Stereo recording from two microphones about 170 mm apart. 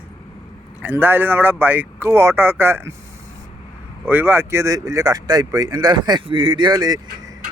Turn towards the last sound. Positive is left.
turn(degrees=-25)  # may be behind; listen again after turning